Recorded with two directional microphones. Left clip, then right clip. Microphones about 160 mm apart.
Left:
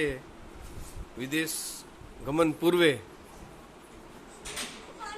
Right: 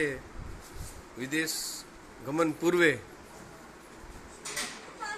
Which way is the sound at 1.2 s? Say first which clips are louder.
Even; 10° left (ahead or behind).